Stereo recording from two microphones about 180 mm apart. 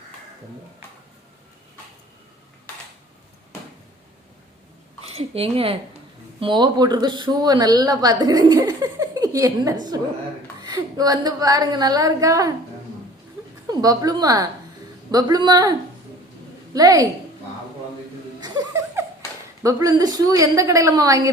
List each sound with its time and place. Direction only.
5.0 s a woman's voice: 35° right (ahead or behind); by 12.5 s 20° right (ahead or behind)
13.7 s a woman's voice: 20° right (ahead or behind)
16.7 s a woman's voice: 20° right (ahead or behind)
18.3 s laughter: 20° right (ahead or behind)
19.6 s a woman's voice: 20° right (ahead or behind)